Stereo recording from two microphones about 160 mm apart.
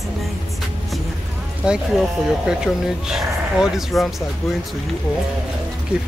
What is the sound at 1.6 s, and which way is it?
Speech, 5° right (ahead or behind).